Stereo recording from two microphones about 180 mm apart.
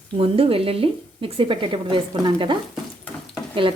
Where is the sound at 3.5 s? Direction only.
30° right (ahead or behind).